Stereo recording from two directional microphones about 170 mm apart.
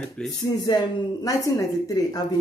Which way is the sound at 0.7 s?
20° left (ahead or behind).